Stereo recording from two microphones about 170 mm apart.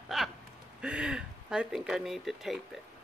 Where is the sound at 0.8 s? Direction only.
5° right (ahead or behind).